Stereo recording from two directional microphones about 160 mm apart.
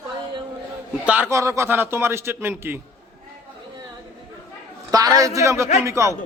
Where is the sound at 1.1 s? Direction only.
15° right (ahead or behind).